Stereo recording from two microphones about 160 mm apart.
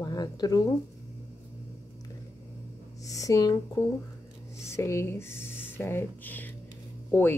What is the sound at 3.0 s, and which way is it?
Speech, 20° left (ahead or behind).